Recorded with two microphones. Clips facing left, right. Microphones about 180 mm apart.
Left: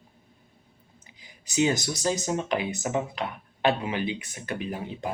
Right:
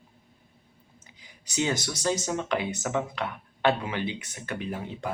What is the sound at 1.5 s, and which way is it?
Speech, 15° left (ahead or behind).